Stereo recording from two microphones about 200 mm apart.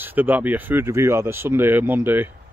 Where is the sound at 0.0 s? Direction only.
10° right (ahead or behind).